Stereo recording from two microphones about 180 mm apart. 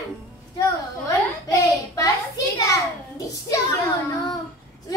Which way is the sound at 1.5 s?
20° left (ahead or behind).